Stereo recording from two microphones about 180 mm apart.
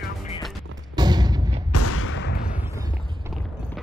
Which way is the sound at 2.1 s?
75° left (ahead or behind).